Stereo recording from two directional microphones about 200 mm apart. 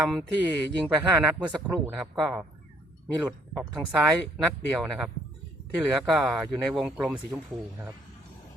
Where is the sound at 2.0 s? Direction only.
Centre (ahead or behind).